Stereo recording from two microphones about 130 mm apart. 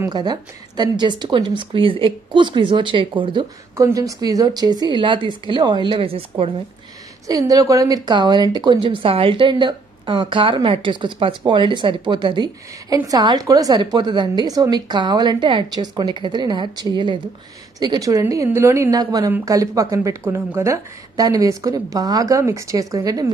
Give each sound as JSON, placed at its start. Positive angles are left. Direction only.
{"t": 0.1, "sound": "a woman's voice", "side_deg": -35}
{"t": 3.7, "sound": "a woman's voice", "side_deg": -25}
{"t": 7.2, "sound": "a woman's voice", "side_deg": -25}